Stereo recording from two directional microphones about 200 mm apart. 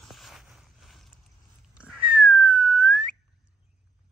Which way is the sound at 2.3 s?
Centre (ahead or behind).